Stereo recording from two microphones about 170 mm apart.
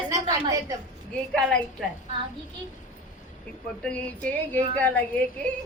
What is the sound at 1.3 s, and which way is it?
Speech, 5° left (ahead or behind).